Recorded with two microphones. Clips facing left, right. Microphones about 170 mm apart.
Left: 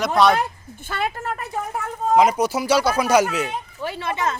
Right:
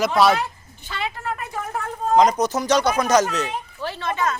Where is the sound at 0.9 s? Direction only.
45° left (ahead or behind).